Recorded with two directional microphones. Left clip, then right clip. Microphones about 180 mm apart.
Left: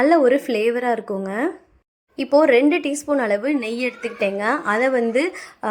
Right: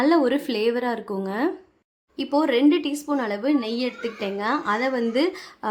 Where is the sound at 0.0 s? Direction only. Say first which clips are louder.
Left 4 dB; 20° left (ahead or behind).